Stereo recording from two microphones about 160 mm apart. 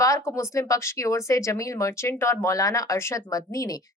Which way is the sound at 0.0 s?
20° left (ahead or behind).